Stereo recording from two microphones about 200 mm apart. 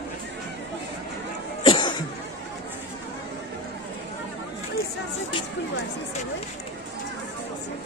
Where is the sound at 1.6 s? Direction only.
20° left (ahead or behind).